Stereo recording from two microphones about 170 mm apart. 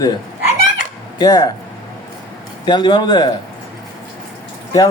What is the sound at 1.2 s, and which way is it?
Speech, 20° left (ahead or behind).